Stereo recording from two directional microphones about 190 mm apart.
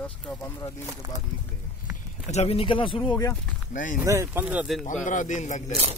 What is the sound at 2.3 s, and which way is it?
Speech, 30° left (ahead or behind).